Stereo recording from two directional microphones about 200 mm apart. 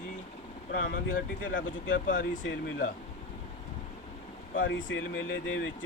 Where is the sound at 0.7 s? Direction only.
45° left (ahead or behind).